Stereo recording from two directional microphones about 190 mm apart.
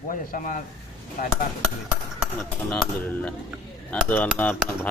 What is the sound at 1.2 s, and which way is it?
Speech, 45° left (ahead or behind).